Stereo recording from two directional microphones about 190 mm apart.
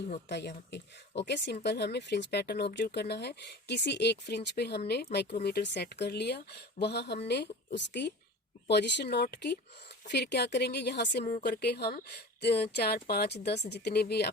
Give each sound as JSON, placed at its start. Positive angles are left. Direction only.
{"t": 0.3, "sound": "speech", "side_deg": 65}